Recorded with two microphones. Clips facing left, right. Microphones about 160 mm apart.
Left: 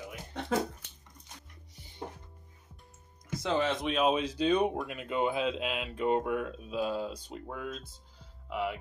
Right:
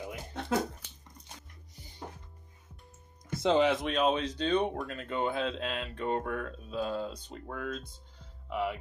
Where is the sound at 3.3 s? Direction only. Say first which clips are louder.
Right 4 dB; 25° right (ahead or behind).